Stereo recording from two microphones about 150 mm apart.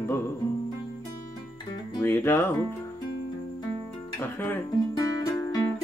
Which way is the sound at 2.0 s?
15° left (ahead or behind).